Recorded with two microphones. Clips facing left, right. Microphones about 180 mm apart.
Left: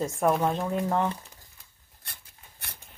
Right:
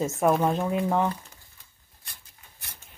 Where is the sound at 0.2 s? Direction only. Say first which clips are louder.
Right 2 dB; centre (ahead or behind).